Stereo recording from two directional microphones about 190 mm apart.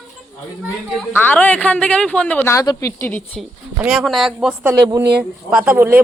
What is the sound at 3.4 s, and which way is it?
Speech, centre (ahead or behind).